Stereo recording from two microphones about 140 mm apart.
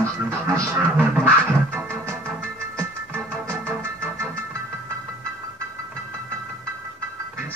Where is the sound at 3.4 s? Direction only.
15° right (ahead or behind).